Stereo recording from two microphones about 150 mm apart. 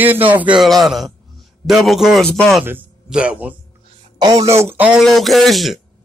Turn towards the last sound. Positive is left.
turn(degrees=0)  # may be behind; listen again after turning